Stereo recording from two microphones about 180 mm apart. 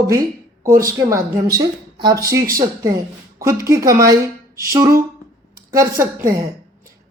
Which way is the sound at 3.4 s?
15° right (ahead or behind).